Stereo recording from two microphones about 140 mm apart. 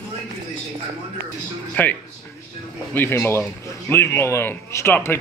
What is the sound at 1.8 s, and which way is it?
Speech, 10° left (ahead or behind).